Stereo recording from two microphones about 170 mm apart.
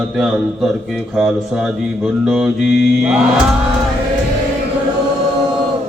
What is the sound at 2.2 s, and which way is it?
Mantra, centre (ahead or behind).